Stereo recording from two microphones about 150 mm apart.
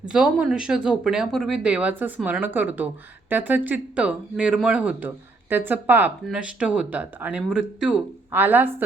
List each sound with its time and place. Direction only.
0.1 s speech: 5° right (ahead or behind)